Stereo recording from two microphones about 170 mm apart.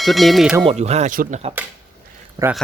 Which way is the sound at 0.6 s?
40° right (ahead or behind).